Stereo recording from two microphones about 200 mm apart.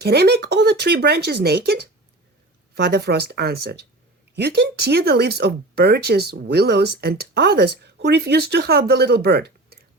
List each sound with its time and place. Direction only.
0.0 s speech: 55° right (ahead or behind)